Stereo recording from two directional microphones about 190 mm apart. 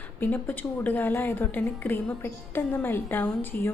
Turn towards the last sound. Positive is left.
turn(degrees=10)  # may be behind; listen again after turning